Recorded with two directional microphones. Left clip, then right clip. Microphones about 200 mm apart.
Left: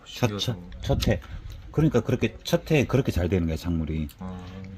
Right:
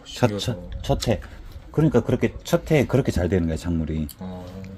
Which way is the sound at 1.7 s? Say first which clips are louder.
Right 4 dB; 30° left (ahead or behind).